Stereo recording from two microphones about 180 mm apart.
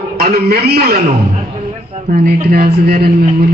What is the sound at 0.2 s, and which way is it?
Speech, 55° right (ahead or behind).